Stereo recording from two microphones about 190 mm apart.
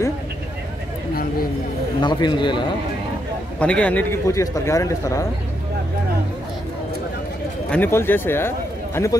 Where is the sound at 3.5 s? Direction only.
5° left (ahead or behind).